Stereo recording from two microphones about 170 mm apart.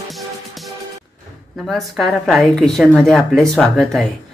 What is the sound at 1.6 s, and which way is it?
A woman's voice, centre (ahead or behind).